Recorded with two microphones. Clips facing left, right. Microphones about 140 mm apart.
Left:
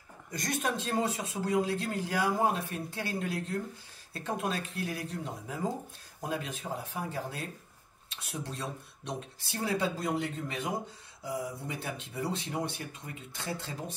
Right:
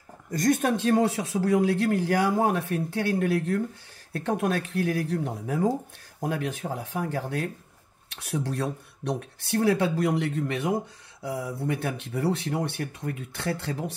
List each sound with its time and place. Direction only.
0.3 s a man's voice: 50° right (ahead or behind); by 13.7 s 70° right (ahead or behind)